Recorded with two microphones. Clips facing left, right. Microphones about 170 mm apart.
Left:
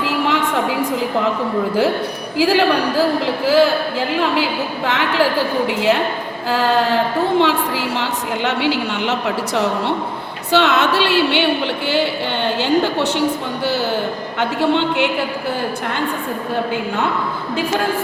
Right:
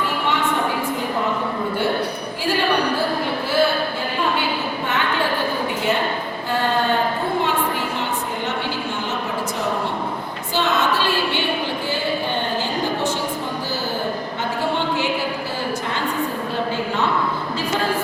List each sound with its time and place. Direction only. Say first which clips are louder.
2.4 s a woman's voice: left 6 dB; 90° left
4.9 s a woman's voice: left 6 dB; 90° left
6.5 s a woman's voice: left 4 dB; 90° left; by 13.2 s 75° left (ahead or behind)
14.8 s a man's voice: left 4 dB; 65° left (ahead or behind)